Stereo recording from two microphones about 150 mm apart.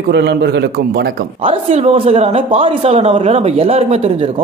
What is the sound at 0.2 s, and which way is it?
Speech, 90° right.